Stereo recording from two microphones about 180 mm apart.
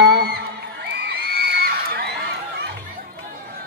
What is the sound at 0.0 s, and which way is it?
Crowd, 65° right (ahead or behind).